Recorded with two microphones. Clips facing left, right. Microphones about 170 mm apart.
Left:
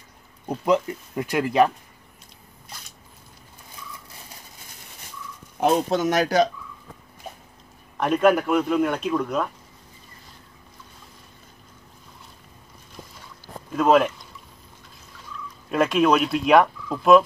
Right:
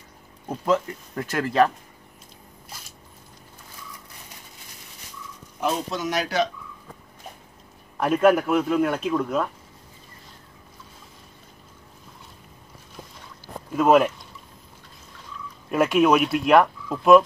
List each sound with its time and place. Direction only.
0.7 s speech: 15° left (ahead or behind)
5.6 s speech: 55° left (ahead or behind)
8.0 s speech: 5° right (ahead or behind)
13.7 s speech: 5° right (ahead or behind)
15.7 s speech: 5° right (ahead or behind)